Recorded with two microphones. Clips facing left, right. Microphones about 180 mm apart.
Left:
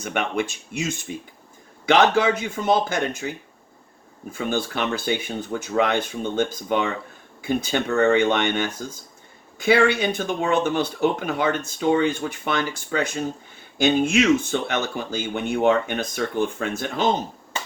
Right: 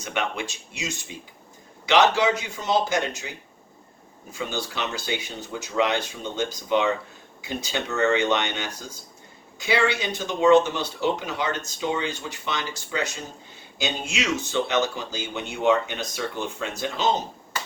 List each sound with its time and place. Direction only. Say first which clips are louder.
0.0 s speech: left 4 dB; 55° left (ahead or behind)